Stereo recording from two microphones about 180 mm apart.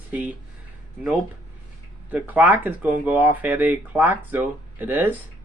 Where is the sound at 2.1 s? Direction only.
10° right (ahead or behind).